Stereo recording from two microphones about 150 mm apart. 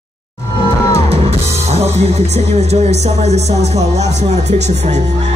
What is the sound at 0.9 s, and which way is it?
Music, 45° right (ahead or behind).